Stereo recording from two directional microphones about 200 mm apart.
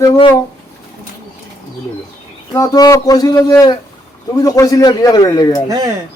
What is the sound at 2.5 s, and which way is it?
A man's voice, 20° left (ahead or behind).